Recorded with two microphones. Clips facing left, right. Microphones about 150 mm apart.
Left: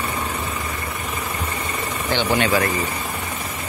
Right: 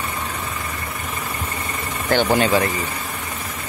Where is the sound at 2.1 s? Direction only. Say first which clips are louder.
Right 3 dB; 40° right (ahead or behind).